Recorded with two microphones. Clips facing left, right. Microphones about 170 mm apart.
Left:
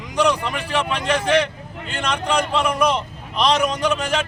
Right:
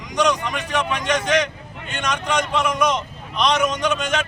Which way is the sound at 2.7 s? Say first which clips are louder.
Left 1 dB; 35° left (ahead or behind).